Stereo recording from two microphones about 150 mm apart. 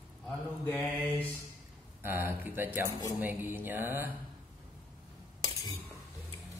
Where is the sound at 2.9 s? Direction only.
20° left (ahead or behind).